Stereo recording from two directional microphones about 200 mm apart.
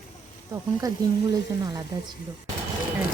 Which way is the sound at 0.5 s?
20° right (ahead or behind).